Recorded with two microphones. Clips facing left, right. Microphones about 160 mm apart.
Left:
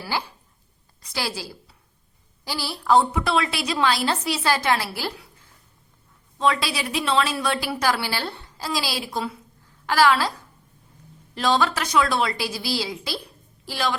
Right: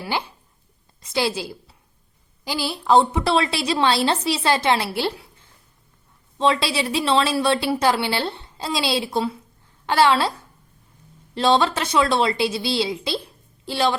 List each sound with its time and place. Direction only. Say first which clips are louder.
0.0 s a woman's voice: right 2 dB; 20° right (ahead or behind)
6.4 s a woman's voice: right 3 dB; 25° right (ahead or behind)
11.3 s a woman's voice: right 3 dB; 25° right (ahead or behind)